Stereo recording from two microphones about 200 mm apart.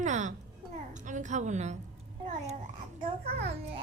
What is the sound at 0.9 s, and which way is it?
Speech, 40° right (ahead or behind).